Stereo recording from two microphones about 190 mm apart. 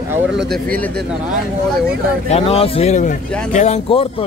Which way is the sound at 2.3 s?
30° left (ahead or behind).